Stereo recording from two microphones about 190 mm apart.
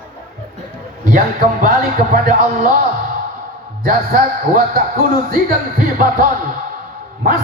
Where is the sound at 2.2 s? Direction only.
50° right (ahead or behind).